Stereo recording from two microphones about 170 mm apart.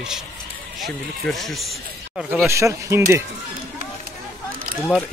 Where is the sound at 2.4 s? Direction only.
15° right (ahead or behind).